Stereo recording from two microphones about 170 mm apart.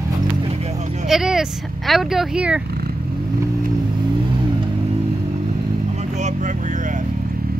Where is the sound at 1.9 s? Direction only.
Centre (ahead or behind).